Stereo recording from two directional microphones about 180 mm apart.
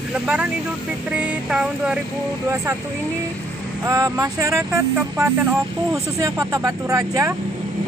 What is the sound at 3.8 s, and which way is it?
Speech, 20° right (ahead or behind).